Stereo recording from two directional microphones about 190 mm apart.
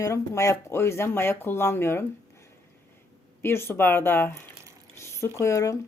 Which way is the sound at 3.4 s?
10° left (ahead or behind).